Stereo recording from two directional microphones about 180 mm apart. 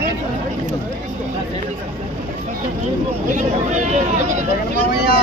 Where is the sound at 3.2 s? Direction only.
45° right (ahead or behind).